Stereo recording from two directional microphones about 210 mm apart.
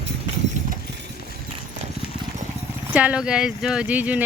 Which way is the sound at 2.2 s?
20° right (ahead or behind).